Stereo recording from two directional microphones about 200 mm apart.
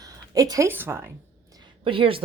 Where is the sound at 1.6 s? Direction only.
25° right (ahead or behind).